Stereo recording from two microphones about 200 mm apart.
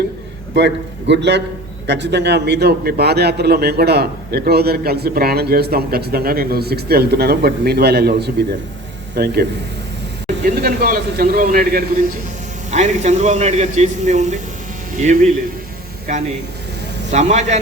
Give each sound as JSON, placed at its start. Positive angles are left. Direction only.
{"t": 0.5, "sound": "a man's voice", "side_deg": -60}
{"t": 12.7, "sound": "a man's voice", "side_deg": -35}
{"t": 17.1, "sound": "a man's voice", "side_deg": -35}